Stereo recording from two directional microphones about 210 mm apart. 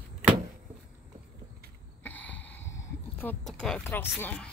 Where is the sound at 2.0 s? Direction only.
5° left (ahead or behind).